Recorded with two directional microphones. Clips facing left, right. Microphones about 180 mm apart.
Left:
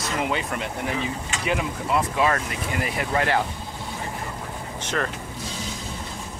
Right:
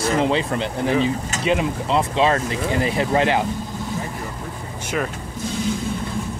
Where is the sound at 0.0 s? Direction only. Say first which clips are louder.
Right 7 dB; 30° right (ahead or behind).